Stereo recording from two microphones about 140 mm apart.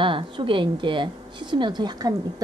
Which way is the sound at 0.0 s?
35° right (ahead or behind).